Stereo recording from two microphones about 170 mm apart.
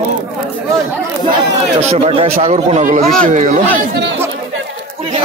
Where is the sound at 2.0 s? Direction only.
35° right (ahead or behind).